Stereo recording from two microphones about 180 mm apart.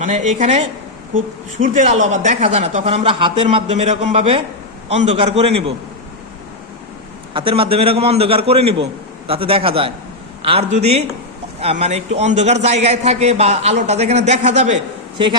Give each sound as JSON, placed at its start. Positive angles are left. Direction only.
{"t": 0.0, "sound": "a woman's voice", "side_deg": -45}
{"t": 7.3, "sound": "a woman's voice", "side_deg": -30}